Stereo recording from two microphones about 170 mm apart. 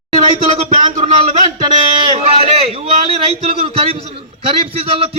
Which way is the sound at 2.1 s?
35° right (ahead or behind).